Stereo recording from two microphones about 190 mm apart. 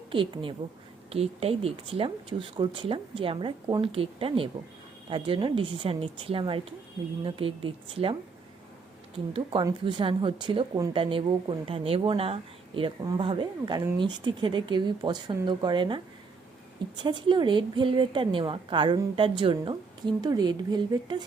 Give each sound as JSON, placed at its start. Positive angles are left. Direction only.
{"t": 0.1, "sound": "a woman's voice", "side_deg": -25}
{"t": 9.3, "sound": "speech", "side_deg": -25}
{"t": 17.0, "sound": "speech", "side_deg": -25}